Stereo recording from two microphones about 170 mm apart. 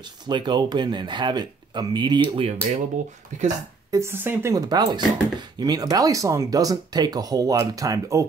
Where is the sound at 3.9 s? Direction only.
15° right (ahead or behind).